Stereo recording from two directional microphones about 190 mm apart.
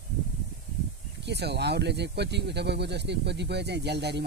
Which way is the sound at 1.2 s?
65° right (ahead or behind).